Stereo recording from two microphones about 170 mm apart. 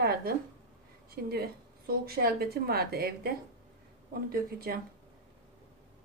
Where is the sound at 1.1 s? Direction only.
65° right (ahead or behind).